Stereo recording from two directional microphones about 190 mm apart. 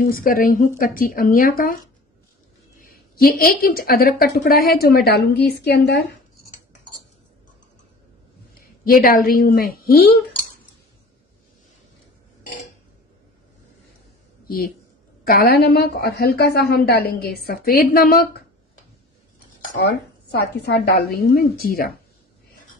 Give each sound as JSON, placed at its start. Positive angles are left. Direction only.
{"t": 0.0, "sound": "a woman's voice", "side_deg": 50}
{"t": 2.8, "sound": "a woman's voice", "side_deg": 50}
{"t": 8.8, "sound": "a woman's voice", "side_deg": 50}
{"t": 15.2, "sound": "a woman's voice", "side_deg": 50}
{"t": 20.2, "sound": "a woman's voice", "side_deg": 60}